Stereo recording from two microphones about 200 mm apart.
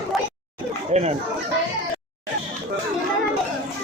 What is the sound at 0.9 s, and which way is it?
Speech, 35° right (ahead or behind).